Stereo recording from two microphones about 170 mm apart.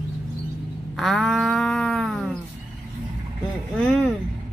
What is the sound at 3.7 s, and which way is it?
Vehicle, 5° left (ahead or behind).